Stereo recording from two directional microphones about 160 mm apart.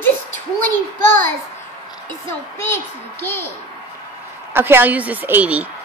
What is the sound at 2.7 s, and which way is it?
Speech, 15° left (ahead or behind).